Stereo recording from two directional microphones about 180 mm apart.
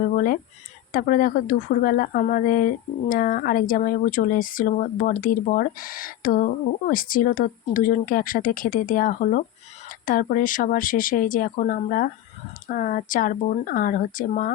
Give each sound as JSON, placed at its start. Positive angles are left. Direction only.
{"t": 0.9, "sound": "speech", "side_deg": 50}